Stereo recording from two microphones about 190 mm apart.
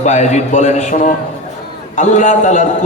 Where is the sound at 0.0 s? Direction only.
40° left (ahead or behind).